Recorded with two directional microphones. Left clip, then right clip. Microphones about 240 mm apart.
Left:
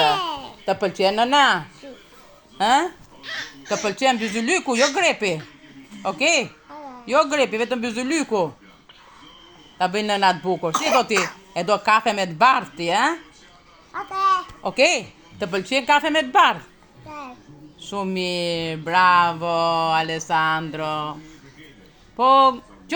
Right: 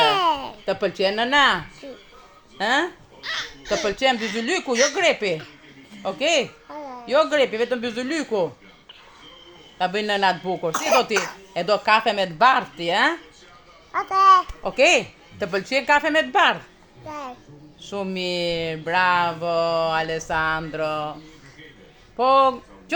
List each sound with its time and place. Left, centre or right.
0.1 s a sound: right
0.6 s speech: centre
6.7 s a sound: right
7.1 s speech: centre
9.7 s speech: centre
10.7 s speech: centre
11.5 s speech: centre
13.9 s a child's voice: right
14.6 s speech: centre
17.1 s music: right
17.7 s speech: centre